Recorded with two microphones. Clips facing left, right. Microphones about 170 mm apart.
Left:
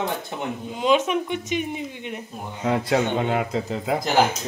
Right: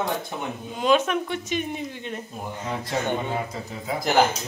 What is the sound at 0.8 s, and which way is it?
A woman's voice, 15° left (ahead or behind).